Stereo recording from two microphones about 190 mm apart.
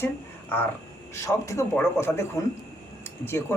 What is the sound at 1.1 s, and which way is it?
Speech, 15° left (ahead or behind).